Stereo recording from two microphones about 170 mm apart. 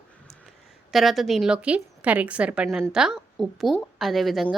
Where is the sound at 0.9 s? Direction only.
Centre (ahead or behind).